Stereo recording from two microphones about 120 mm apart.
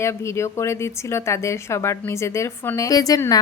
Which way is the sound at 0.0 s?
25° left (ahead or behind).